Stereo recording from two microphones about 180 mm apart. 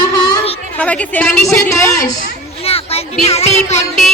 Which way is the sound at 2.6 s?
35° left (ahead or behind).